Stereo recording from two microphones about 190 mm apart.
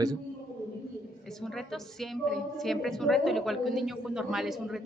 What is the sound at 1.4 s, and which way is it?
A woman's voice, centre (ahead or behind).